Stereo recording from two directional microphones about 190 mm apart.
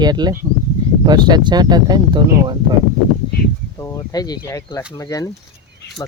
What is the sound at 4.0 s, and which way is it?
Speech, 20° left (ahead or behind).